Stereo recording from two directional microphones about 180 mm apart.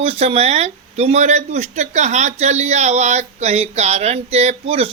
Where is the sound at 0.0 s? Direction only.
35° right (ahead or behind).